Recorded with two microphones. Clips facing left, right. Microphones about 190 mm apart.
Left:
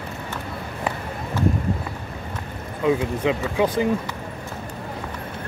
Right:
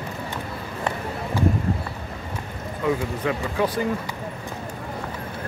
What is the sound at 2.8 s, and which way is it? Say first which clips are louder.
Speech: left 3 dB; 20° left (ahead or behind).